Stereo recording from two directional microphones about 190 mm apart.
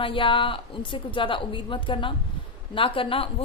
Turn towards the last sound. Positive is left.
turn(degrees=25)  # may be behind; listen again after turning